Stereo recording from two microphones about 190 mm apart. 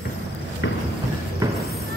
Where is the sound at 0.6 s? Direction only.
75° left (ahead or behind).